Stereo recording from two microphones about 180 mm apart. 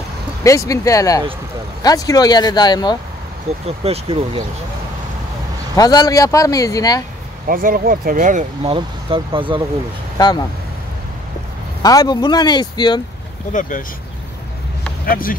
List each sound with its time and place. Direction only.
0.4 s speech: 15° left (ahead or behind)
3.6 s speech: 35° right (ahead or behind)
5.8 s speech: 20° left (ahead or behind)
7.4 s speech: 50° right (ahead or behind)
8.7 s speech: 30° right (ahead or behind)
10.1 s speech: 25° left (ahead or behind)
11.8 s speech: 20° left (ahead or behind)
13.5 s speech: 45° left (ahead or behind)
15.0 s speech: 50° left (ahead or behind)